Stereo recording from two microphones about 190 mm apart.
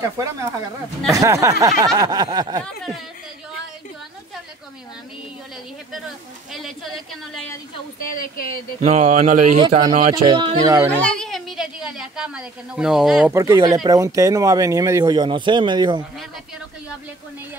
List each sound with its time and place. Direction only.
0.0 s speech: 15° right (ahead or behind)
5.9 s a woman's voice: centre (ahead or behind)
7.3 s a woman's voice: 10° left (ahead or behind)
8.2 s speech: 50° left (ahead or behind)
8.8 s speech: 40° right (ahead or behind)
9.6 s speech: 25° right (ahead or behind)
11.0 s a woman's voice: 5° left (ahead or behind)
13.3 s speech: 15° right (ahead or behind)